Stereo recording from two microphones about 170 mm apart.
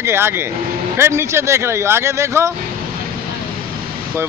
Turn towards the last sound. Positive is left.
turn(degrees=-15)  # may be behind; listen again after turning